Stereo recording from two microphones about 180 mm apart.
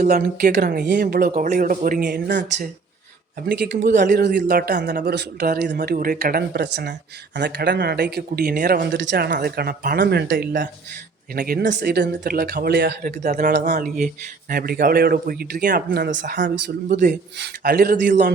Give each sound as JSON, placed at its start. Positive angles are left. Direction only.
{"t": 0.1, "sound": "speech", "side_deg": -60}
{"t": 1.3, "sound": "speech", "side_deg": -45}
{"t": 3.9, "sound": "speech", "side_deg": -45}
{"t": 4.4, "sound": "speech", "side_deg": -60}
{"t": 13.0, "sound": "speech", "side_deg": -40}
{"t": 13.3, "sound": "speech", "side_deg": -60}
{"t": 17.4, "sound": "speech", "side_deg": -60}
{"t": 17.9, "sound": "speech", "side_deg": -45}